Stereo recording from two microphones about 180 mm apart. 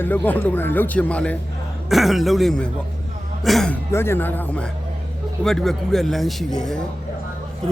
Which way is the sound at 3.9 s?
15° left (ahead or behind).